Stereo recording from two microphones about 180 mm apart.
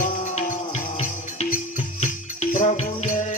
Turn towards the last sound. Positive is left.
turn(degrees=45)  # may be behind; listen again after turning